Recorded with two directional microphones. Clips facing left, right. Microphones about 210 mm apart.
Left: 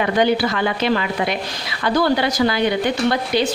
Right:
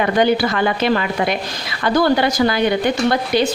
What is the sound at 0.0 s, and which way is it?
A woman's voice, 50° right (ahead or behind).